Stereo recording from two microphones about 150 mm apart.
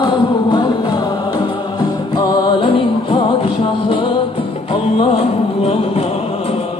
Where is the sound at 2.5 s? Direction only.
35° left (ahead or behind).